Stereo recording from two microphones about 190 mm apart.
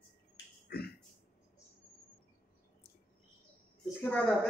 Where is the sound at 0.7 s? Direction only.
55° left (ahead or behind).